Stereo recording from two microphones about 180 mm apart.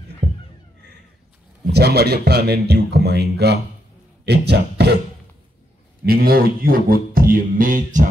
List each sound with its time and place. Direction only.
1.7 s speech: 65° right (ahead or behind)
6.0 s speech: 55° right (ahead or behind)